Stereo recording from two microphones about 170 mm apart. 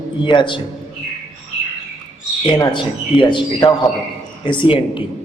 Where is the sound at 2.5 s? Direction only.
30° left (ahead or behind).